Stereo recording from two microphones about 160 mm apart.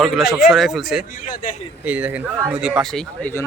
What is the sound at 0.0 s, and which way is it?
Speech, centre (ahead or behind).